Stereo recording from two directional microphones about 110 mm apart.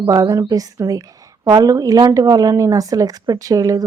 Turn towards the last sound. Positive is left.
turn(degrees=-35)  # may be behind; listen again after turning